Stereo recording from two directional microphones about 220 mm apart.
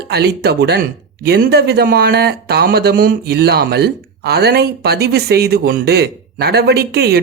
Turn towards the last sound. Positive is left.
turn(degrees=-45)  # may be behind; listen again after turning